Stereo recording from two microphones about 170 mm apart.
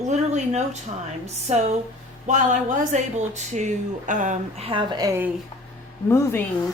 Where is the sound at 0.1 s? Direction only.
45° right (ahead or behind).